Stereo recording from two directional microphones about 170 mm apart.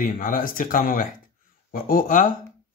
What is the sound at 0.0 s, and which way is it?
A man's voice, 50° left (ahead or behind).